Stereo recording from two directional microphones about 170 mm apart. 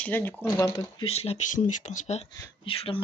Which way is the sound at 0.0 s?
10° left (ahead or behind).